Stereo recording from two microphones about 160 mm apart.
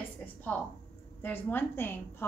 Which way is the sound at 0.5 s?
10° left (ahead or behind).